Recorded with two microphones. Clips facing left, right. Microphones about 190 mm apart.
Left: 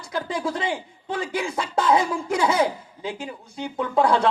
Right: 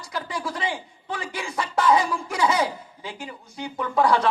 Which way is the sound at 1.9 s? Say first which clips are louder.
Left 2 dB; 55° left (ahead or behind).